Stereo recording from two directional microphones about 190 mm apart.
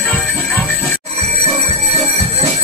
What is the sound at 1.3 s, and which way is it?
Music, 30° right (ahead or behind).